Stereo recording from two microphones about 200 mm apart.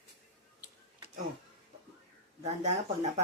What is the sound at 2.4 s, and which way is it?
Speech, 35° right (ahead or behind).